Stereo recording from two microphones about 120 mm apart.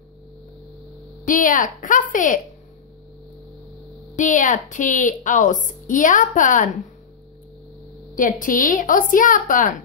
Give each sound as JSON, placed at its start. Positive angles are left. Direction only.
{"t": 1.2, "sound": "a woman's voice", "side_deg": 90}
{"t": 4.1, "sound": "a woman's voice", "side_deg": 90}
{"t": 8.1, "sound": "a woman's voice", "side_deg": 90}